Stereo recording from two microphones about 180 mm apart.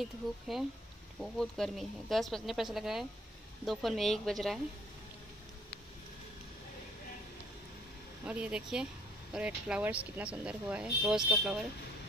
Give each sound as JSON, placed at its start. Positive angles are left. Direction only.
{"t": 0.5, "sound": "speech", "side_deg": 0}
{"t": 8.3, "sound": "speech", "side_deg": -5}